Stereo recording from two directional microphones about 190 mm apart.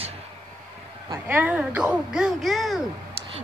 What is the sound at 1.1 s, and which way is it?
Speech, 10° right (ahead or behind).